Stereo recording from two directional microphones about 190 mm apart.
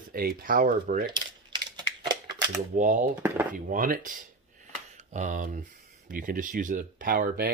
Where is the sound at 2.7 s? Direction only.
45° right (ahead or behind).